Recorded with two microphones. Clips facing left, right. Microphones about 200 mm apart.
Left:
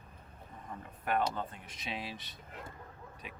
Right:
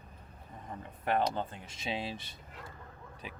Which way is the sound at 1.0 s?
25° right (ahead or behind).